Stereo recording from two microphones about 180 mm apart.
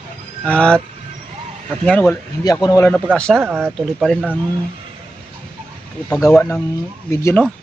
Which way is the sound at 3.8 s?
Centre (ahead or behind).